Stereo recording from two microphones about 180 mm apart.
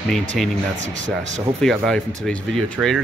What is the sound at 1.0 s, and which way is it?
Speech, 40° right (ahead or behind).